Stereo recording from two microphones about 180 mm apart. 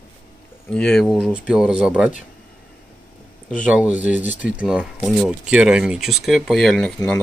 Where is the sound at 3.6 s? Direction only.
5° right (ahead or behind).